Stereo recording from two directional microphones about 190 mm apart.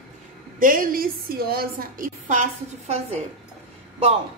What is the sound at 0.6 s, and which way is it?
A woman's voice, 45° right (ahead or behind).